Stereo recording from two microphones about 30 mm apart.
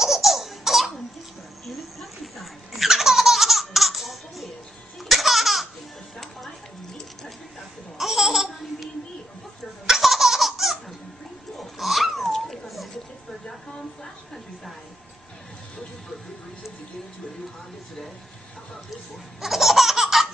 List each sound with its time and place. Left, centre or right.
0.0 s laughter: centre
8.0 s laughter: centre
9.8 s laughter: centre
11.5 s cat: centre
12.2 s dog: centre
19.4 s laughter: centre